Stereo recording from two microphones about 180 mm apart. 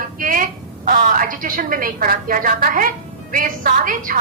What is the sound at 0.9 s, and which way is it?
A woman's voice, 50° right (ahead or behind).